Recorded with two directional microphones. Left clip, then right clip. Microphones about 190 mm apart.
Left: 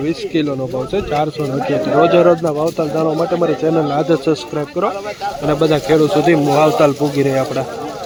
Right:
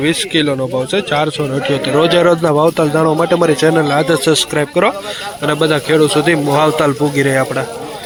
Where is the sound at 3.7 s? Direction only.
5° right (ahead or behind).